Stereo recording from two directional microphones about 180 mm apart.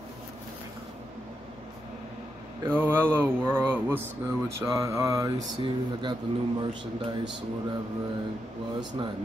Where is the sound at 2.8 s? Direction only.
10° right (ahead or behind).